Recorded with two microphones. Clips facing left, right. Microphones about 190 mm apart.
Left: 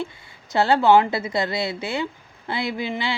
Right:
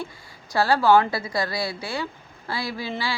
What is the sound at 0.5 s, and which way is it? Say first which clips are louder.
Speech: left 2 dB; 25° left (ahead or behind).